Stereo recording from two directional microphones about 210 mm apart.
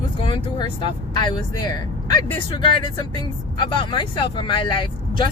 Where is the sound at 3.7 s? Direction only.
25° left (ahead or behind).